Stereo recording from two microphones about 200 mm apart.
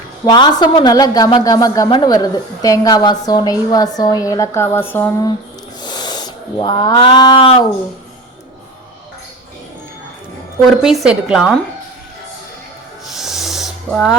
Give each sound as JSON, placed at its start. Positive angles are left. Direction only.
{"t": 0.3, "sound": "speech", "side_deg": 20}
{"t": 10.8, "sound": "a woman's voice", "side_deg": -5}
{"t": 13.1, "sound": "a sound", "side_deg": 0}